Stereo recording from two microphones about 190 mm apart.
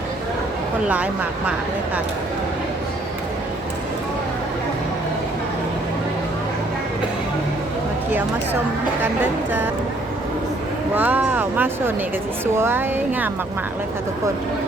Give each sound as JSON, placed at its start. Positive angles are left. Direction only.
{"t": 0.9, "sound": "speech", "side_deg": -5}
{"t": 10.9, "sound": "speech", "side_deg": -10}